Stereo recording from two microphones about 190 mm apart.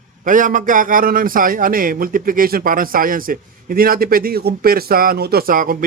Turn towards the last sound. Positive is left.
turn(degrees=-50)  # may be behind; listen again after turning